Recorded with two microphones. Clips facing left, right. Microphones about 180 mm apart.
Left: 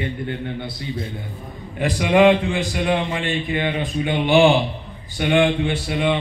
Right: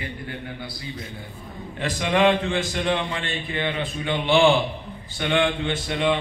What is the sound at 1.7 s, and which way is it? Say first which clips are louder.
A man's voice: left 6 dB; 15° left (ahead or behind).